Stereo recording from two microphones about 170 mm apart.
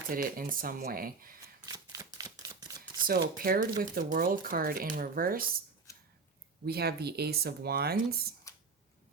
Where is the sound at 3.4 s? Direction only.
55° right (ahead or behind).